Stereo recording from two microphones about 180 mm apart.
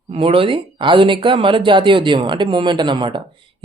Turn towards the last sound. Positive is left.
turn(degrees=-25)  # may be behind; listen again after turning